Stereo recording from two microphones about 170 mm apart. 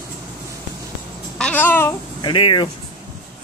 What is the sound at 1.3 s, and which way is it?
Babbling, 10° left (ahead or behind).